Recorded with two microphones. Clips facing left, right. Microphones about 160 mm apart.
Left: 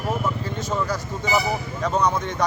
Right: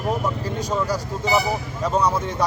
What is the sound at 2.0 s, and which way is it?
Speech, 5° right (ahead or behind).